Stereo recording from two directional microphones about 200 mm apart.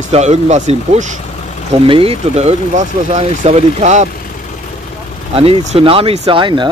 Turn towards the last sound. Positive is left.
turn(degrees=-25)  # may be behind; listen again after turning